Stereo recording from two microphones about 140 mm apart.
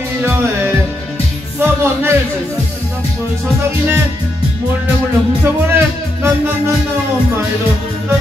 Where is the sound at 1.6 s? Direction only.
15° right (ahead or behind).